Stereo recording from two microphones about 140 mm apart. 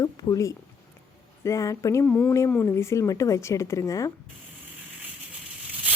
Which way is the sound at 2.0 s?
10° left (ahead or behind).